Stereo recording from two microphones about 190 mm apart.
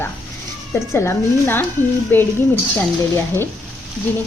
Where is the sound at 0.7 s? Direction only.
10° left (ahead or behind).